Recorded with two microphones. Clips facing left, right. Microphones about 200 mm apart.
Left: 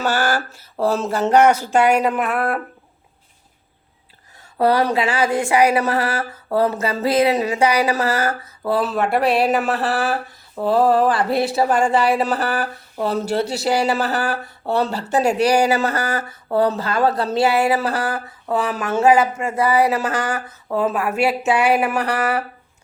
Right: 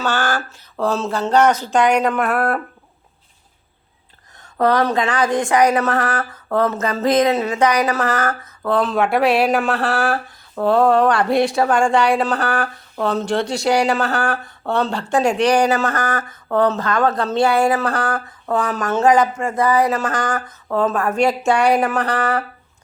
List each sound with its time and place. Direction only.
0.0 s speech: 10° left (ahead or behind)
4.4 s speech: 10° left (ahead or behind)